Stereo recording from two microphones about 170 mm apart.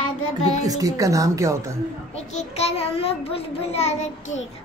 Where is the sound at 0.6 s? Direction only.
20° right (ahead or behind).